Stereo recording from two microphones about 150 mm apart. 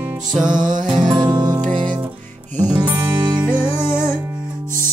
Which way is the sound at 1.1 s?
30° right (ahead or behind).